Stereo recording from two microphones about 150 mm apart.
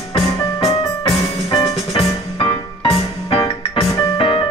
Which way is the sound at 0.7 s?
35° left (ahead or behind).